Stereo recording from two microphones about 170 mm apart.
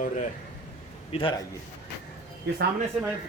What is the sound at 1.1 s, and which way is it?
Speech, 30° left (ahead or behind).